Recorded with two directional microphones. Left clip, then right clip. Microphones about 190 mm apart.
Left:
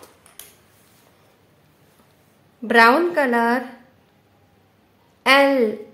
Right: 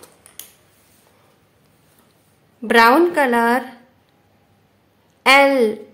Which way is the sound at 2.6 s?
15° right (ahead or behind).